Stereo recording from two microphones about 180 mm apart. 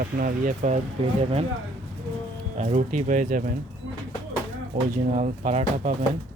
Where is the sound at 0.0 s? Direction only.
50° right (ahead or behind).